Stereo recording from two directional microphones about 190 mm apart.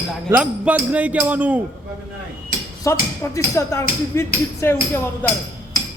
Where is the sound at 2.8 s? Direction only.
15° left (ahead or behind).